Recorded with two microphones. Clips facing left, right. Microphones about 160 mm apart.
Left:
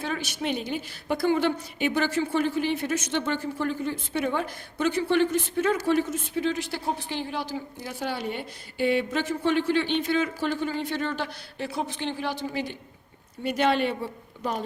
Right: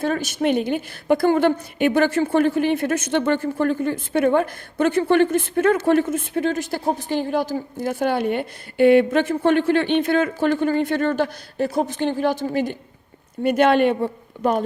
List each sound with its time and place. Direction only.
0.0 s a woman's voice: 45° right (ahead or behind)